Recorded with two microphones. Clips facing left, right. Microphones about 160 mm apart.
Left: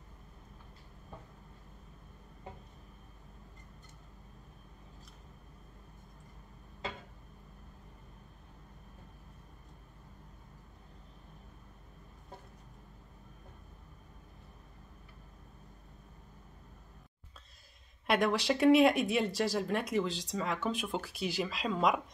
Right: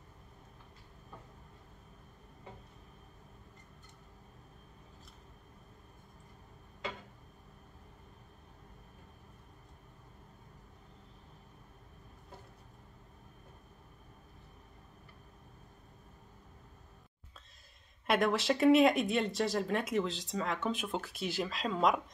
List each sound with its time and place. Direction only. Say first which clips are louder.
18.0 s speech: even; centre (ahead or behind)